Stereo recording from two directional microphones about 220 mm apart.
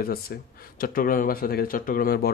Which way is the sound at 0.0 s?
40° left (ahead or behind).